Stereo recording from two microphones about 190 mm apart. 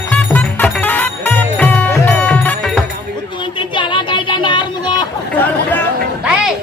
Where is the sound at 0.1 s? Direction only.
5° left (ahead or behind).